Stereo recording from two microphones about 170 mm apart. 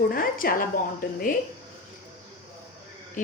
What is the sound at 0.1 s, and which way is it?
Speech, 60° left (ahead or behind).